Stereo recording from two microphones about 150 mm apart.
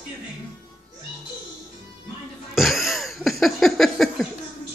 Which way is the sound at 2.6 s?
Centre (ahead or behind).